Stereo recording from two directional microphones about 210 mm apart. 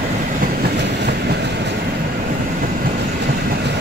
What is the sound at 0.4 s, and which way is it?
Train, 45° right (ahead or behind).